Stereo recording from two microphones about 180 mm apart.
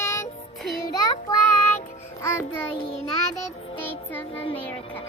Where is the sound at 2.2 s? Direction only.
15° left (ahead or behind).